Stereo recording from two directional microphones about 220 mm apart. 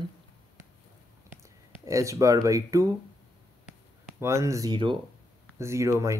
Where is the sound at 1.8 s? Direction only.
15° right (ahead or behind).